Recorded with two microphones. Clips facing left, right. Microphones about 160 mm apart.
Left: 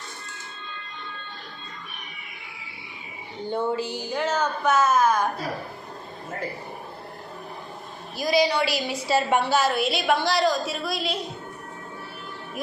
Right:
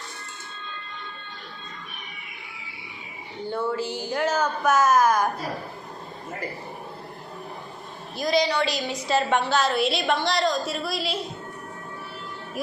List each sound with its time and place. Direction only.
3.5 s a woman's voice: 20° left (ahead or behind)
4.1 s a woman's voice: 10° right (ahead or behind)
8.1 s a woman's voice: 5° left (ahead or behind)